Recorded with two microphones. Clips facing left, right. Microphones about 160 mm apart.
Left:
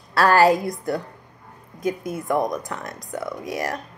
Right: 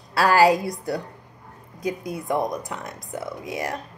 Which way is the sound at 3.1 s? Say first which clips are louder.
Left 2 dB; 20° right (ahead or behind).